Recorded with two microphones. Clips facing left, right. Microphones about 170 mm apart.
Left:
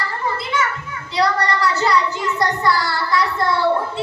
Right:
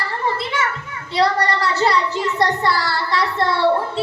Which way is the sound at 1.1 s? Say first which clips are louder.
Right 1 dB; 30° right (ahead or behind).